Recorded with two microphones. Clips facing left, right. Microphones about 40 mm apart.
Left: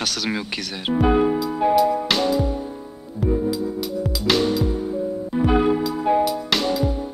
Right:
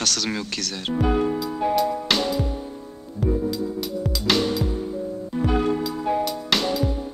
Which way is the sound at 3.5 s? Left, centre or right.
Centre.